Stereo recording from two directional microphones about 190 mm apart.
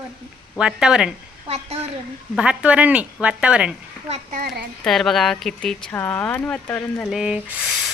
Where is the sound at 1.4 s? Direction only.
35° right (ahead or behind).